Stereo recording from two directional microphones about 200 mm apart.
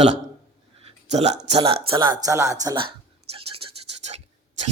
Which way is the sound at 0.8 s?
35° right (ahead or behind).